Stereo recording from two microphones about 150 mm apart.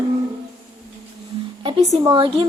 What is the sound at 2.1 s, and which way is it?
Speech, 35° right (ahead or behind).